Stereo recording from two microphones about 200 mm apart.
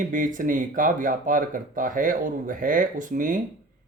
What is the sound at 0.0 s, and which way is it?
Speech, 40° right (ahead or behind).